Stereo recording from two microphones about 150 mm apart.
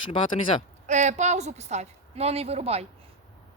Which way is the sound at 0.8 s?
50° right (ahead or behind).